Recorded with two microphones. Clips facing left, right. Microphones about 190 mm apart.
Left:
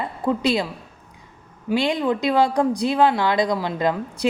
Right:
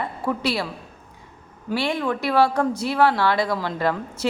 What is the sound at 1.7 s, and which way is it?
Speech, 15° left (ahead or behind).